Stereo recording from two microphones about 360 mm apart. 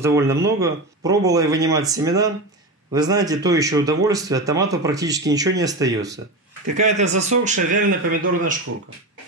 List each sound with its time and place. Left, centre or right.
0.0 s speech: centre